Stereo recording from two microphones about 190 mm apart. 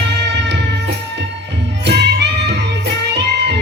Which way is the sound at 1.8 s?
65° right (ahead or behind).